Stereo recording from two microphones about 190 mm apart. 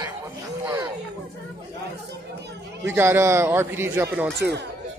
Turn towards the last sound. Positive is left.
turn(degrees=-10)  # may be behind; listen again after turning